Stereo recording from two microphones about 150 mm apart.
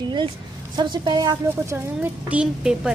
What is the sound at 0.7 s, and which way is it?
A woman's voice, 30° right (ahead or behind).